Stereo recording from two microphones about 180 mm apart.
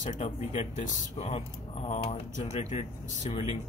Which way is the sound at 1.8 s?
35° left (ahead or behind).